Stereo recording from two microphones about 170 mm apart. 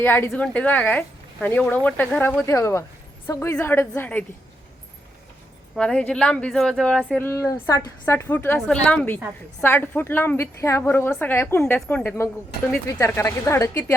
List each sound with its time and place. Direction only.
0.0 s a woman's voice: 10° left (ahead or behind)
5.7 s a woman's voice: 5° left (ahead or behind)